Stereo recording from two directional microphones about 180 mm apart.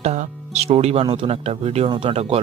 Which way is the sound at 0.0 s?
40° right (ahead or behind).